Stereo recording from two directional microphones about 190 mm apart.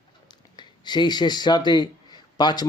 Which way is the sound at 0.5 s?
25° left (ahead or behind).